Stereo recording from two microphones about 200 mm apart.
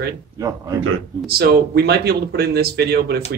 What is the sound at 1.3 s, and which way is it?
Speech, 55° right (ahead or behind).